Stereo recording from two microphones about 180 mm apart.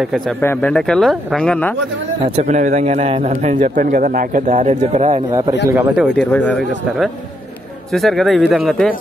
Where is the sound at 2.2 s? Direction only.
40° right (ahead or behind).